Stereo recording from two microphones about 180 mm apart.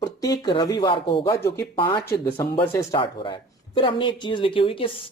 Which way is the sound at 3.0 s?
30° left (ahead or behind).